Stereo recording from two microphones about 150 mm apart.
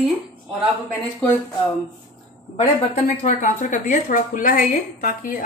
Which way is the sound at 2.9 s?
50° left (ahead or behind).